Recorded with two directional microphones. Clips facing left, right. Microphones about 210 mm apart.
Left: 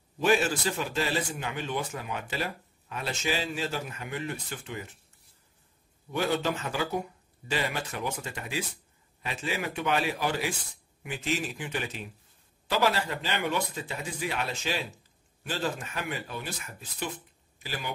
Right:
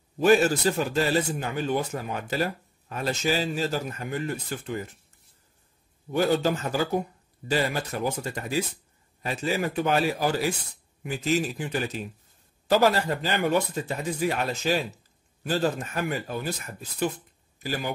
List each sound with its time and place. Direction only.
0.2 s a man's voice: 40° right (ahead or behind)
6.1 s a man's voice: 40° right (ahead or behind)